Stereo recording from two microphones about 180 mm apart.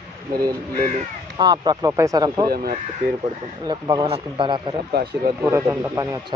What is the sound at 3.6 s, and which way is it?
Speech, 20° right (ahead or behind).